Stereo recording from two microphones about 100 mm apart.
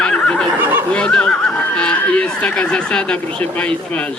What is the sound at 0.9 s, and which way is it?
Speech, 10° left (ahead or behind).